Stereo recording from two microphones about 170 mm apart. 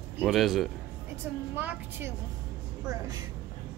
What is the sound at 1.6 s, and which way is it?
Speech, 10° right (ahead or behind).